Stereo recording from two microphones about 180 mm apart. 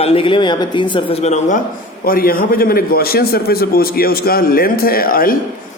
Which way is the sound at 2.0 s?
55° left (ahead or behind).